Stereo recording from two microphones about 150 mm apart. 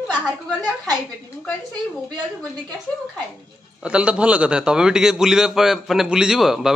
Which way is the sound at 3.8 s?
5° right (ahead or behind).